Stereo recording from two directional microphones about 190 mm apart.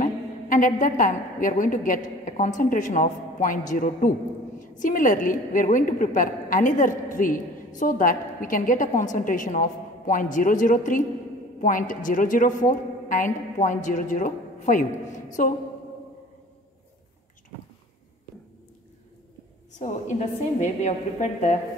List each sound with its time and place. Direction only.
0.0 s a woman's voice: 45° left (ahead or behind)
19.8 s a woman's voice: 40° left (ahead or behind)